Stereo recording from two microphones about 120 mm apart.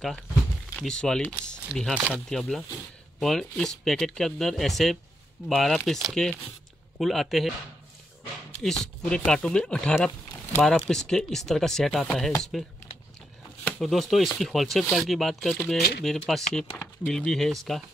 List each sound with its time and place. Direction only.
0.7 s speech: 5° left (ahead or behind)
8.6 s speech: 5° left (ahead or behind)
13.7 s speech: 5° left (ahead or behind)